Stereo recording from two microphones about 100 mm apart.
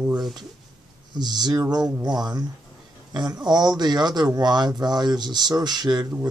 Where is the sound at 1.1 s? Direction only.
45° right (ahead or behind).